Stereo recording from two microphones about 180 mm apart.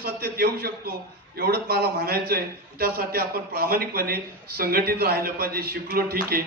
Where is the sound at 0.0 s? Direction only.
55° right (ahead or behind).